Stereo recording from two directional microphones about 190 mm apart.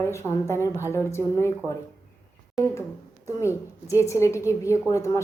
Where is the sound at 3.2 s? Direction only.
15° left (ahead or behind).